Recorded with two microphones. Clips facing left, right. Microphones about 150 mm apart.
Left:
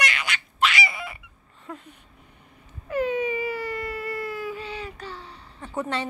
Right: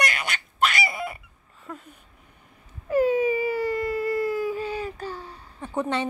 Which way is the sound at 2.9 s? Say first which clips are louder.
Right 4 dB; 40° right (ahead or behind).